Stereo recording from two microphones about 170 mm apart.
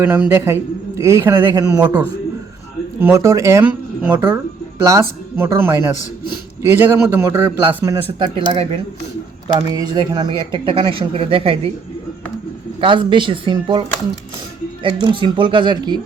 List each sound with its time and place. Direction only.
0.0 s a man's voice: 10° right (ahead or behind)
3.0 s a man's voice: 15° right (ahead or behind)
8.2 s speech: 30° right (ahead or behind)
9.6 s speech: 25° right (ahead or behind)
12.8 s speech: 30° right (ahead or behind)
15.0 s speech: 30° right (ahead or behind)